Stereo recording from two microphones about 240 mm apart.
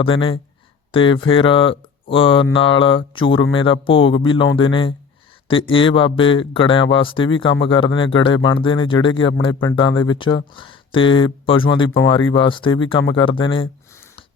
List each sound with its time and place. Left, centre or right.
0.0 s speech: left